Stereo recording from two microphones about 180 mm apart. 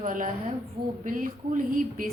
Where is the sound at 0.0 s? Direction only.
45° right (ahead or behind).